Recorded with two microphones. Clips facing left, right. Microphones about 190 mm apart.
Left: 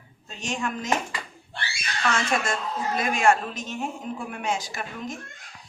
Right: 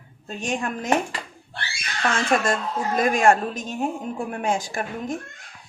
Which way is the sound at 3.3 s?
55° right (ahead or behind).